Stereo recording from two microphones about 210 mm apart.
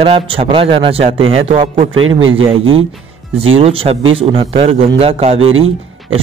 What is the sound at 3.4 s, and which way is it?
Speech, 25° right (ahead or behind).